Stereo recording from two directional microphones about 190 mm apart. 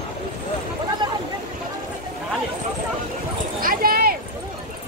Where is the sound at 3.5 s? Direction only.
50° right (ahead or behind).